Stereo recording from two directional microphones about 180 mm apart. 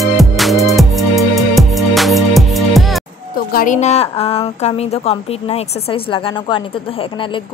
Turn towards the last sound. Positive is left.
turn(degrees=35)  # may be behind; listen again after turning